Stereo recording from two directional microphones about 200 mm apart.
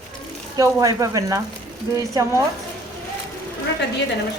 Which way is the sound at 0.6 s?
15° right (ahead or behind).